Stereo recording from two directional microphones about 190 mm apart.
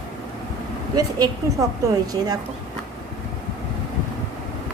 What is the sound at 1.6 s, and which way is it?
Speech, 15° right (ahead or behind).